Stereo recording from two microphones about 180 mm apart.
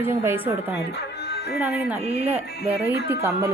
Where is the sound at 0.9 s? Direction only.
65° left (ahead or behind).